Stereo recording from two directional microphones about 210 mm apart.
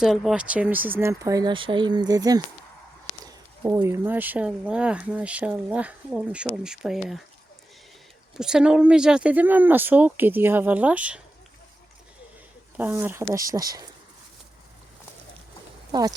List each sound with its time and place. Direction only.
0.0 s speech: centre (ahead or behind)
8.4 s speech: 5° right (ahead or behind)
12.7 s speech: 10° right (ahead or behind)
15.9 s speech: 20° right (ahead or behind)